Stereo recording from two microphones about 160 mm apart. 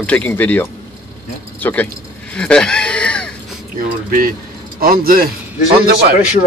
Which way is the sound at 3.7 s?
65° right (ahead or behind).